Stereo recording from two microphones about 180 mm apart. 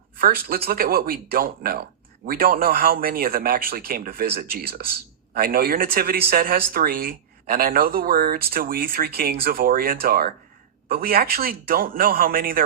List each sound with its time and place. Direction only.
0.2 s speech: 55° right (ahead or behind)